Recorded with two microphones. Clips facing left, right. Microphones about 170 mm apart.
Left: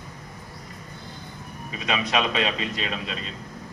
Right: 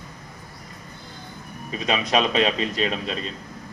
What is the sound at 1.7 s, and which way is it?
A man's voice, 35° right (ahead or behind).